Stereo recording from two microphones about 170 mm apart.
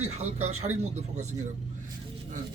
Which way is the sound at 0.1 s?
40° right (ahead or behind).